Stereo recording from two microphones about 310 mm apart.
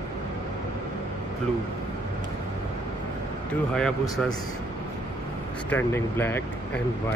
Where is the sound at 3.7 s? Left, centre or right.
Centre.